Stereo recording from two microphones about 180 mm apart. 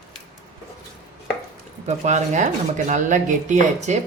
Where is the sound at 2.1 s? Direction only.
40° right (ahead or behind).